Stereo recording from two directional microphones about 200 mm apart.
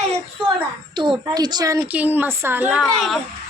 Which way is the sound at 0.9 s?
20° right (ahead or behind).